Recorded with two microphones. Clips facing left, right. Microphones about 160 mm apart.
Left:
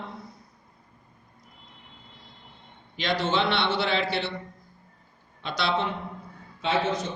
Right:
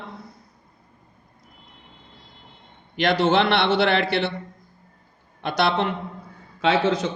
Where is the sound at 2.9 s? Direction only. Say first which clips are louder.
Right 7 dB; 65° right (ahead or behind).